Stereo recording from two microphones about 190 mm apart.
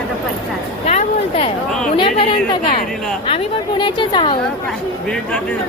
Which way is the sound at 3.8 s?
25° left (ahead or behind).